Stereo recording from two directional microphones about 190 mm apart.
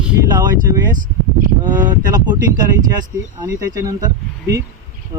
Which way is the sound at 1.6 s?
20° right (ahead or behind).